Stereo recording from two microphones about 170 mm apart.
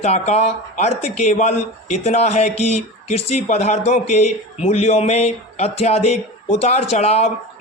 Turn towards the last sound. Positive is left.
turn(degrees=40)  # may be behind; listen again after turning